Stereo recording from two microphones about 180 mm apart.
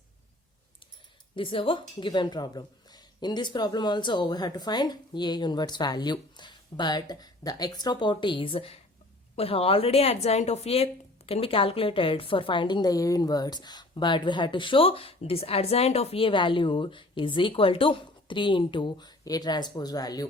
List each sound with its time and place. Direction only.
1.4 s a woman's voice: 30° left (ahead or behind)